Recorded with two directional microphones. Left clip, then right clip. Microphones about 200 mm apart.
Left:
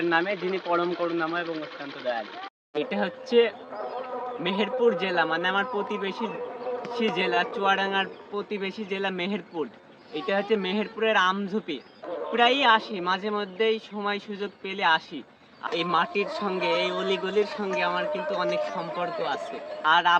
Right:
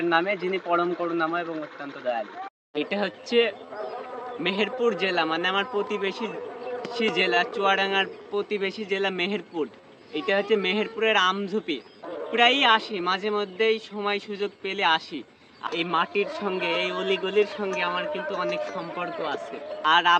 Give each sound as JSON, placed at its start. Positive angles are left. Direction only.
{"t": 0.1, "sound": "speech", "side_deg": 0}
{"t": 0.3, "sound": "speech", "side_deg": 55}
{"t": 1.2, "sound": "speech", "side_deg": 0}
{"t": 2.7, "sound": "speech", "side_deg": -5}